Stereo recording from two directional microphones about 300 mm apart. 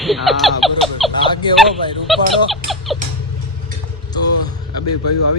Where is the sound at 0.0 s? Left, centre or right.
Centre.